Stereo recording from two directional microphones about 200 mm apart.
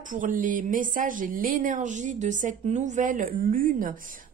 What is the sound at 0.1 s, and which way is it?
Speech, 40° right (ahead or behind).